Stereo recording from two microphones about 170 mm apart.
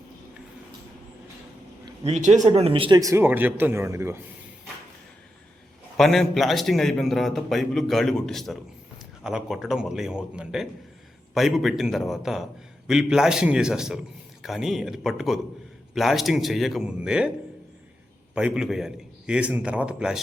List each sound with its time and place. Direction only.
2.0 s speech: 45° right (ahead or behind)
2.5 s speech: 35° right (ahead or behind); by 4.2 s 15° right (ahead or behind)
6.0 s a man's voice: centre (ahead or behind)
18.3 s a man's voice: 5° right (ahead or behind)